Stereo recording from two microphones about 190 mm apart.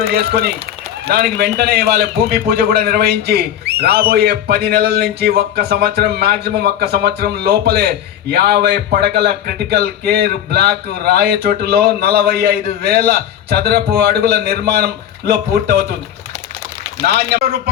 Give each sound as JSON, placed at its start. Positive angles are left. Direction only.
{"t": 0.1, "sound": "a man's voice", "side_deg": -55}
{"t": 17.0, "sound": "a man's voice", "side_deg": -60}